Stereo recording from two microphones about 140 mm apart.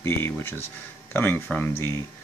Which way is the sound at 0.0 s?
15° left (ahead or behind).